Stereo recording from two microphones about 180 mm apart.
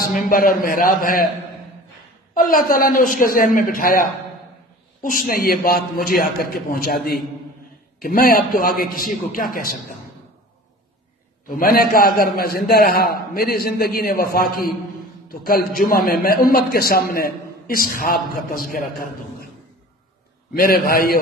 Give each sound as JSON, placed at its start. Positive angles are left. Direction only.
{"t": 0.0, "sound": "a man's voice", "side_deg": 50}
{"t": 2.3, "sound": "a man's voice", "side_deg": 50}
{"t": 11.4, "sound": "a man's voice", "side_deg": 55}
{"t": 20.5, "sound": "a man's voice", "side_deg": 55}